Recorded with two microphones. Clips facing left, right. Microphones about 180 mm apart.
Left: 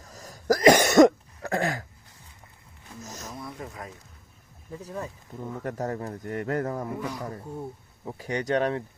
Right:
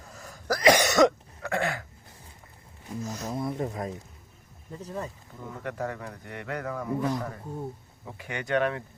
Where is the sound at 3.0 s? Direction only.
40° left (ahead or behind).